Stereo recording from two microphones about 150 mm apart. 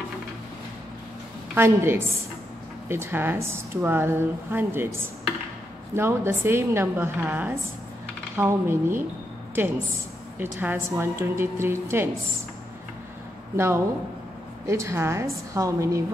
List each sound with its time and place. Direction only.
1.5 s speech: 15° right (ahead or behind)
10.4 s speech: 15° right (ahead or behind)
13.6 s a woman's voice: 15° right (ahead or behind)